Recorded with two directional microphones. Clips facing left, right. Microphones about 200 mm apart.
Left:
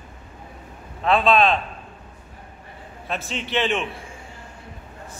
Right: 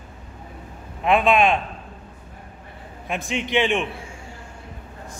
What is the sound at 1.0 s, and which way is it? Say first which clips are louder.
Speech: even; 15° right (ahead or behind).